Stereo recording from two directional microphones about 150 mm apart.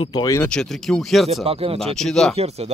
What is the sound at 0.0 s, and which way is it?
Speech, 30° left (ahead or behind).